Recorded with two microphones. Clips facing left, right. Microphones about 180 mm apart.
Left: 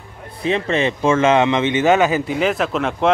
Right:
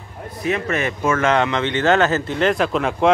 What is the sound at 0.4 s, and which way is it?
Speech, 25° left (ahead or behind).